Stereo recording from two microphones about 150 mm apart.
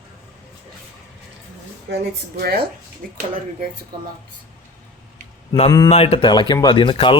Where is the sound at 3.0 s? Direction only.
70° right (ahead or behind).